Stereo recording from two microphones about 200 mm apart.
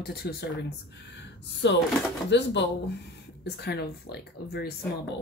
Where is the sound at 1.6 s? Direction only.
60° left (ahead or behind).